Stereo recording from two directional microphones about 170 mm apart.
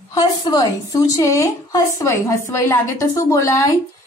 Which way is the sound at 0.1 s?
25° left (ahead or behind).